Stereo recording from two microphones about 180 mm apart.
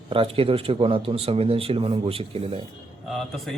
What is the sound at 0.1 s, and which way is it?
Speech, 30° right (ahead or behind).